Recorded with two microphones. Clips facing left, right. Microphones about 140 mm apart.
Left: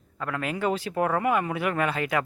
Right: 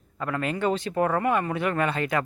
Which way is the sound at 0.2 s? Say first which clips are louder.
Right 2 dB; centre (ahead or behind).